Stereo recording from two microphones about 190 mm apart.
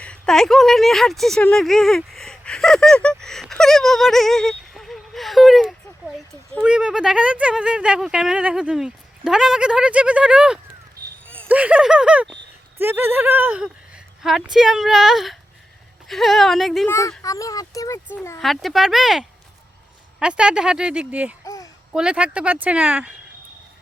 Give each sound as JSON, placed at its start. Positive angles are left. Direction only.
{"t": 0.0, "sound": "a woman's voice", "side_deg": 5}
{"t": 16.9, "sound": "speech", "side_deg": 15}
{"t": 18.3, "sound": "a woman's voice", "side_deg": 0}
{"t": 21.4, "sound": "a sound", "side_deg": 15}
{"t": 21.9, "sound": "a woman's voice", "side_deg": -5}